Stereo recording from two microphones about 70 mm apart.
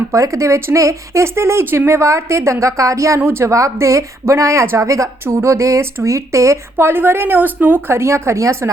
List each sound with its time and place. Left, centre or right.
0.1 s speech: right